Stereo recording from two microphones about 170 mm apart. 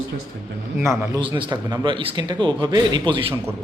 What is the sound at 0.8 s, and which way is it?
Speech, 15° right (ahead or behind).